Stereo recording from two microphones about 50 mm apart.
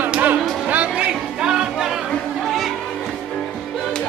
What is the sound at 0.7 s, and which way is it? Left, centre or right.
Music, right.